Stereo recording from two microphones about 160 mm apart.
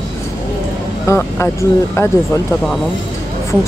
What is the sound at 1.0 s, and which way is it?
Speech, 15° left (ahead or behind).